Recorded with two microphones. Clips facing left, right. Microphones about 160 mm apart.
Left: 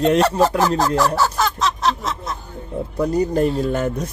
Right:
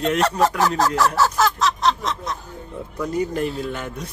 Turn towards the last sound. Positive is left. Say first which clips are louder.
# left 7 dB
turn(degrees=40)  # may be behind; listen again after turning